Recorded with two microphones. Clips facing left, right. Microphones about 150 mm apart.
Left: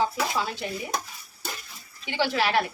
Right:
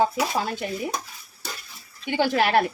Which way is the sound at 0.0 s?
50° right (ahead or behind).